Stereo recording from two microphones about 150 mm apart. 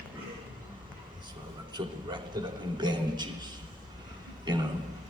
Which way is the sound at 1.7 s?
30° right (ahead or behind).